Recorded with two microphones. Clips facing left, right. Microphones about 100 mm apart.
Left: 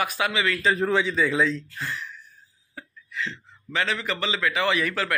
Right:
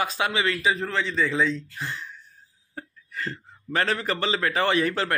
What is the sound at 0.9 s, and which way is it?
Speech, 10° left (ahead or behind).